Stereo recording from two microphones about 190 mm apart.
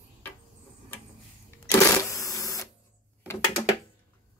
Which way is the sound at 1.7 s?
15° left (ahead or behind).